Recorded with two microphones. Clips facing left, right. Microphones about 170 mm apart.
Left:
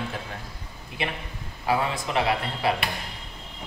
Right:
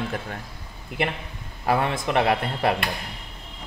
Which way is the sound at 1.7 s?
60° right (ahead or behind).